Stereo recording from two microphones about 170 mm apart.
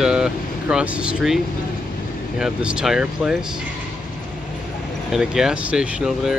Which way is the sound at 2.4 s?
5° right (ahead or behind).